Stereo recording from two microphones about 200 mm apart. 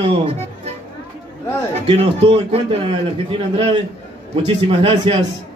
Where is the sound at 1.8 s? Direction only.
25° right (ahead or behind).